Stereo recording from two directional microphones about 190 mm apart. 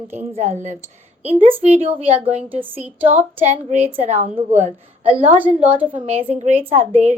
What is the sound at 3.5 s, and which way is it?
A woman's voice, 35° right (ahead or behind).